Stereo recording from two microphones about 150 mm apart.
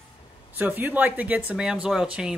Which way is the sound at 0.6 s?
10° right (ahead or behind).